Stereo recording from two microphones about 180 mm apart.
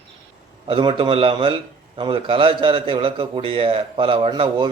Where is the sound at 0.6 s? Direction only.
30° right (ahead or behind).